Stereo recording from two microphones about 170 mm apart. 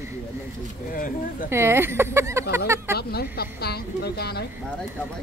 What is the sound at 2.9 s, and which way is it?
Speech, 65° left (ahead or behind).